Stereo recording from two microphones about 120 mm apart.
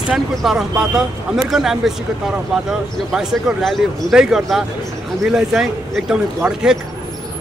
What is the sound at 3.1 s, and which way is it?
Speech, 5° right (ahead or behind).